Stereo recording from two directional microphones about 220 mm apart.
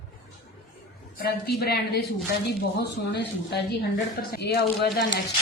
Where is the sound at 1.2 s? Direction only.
45° left (ahead or behind).